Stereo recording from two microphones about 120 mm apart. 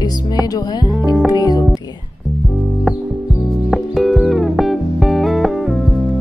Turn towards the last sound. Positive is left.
turn(degrees=0)  # may be behind; listen again after turning